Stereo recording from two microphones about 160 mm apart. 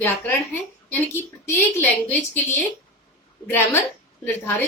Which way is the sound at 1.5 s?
10° left (ahead or behind).